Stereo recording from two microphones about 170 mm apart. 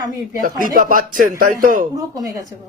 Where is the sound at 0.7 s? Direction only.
55° right (ahead or behind).